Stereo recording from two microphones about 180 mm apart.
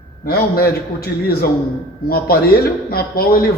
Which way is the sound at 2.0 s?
60° left (ahead or behind).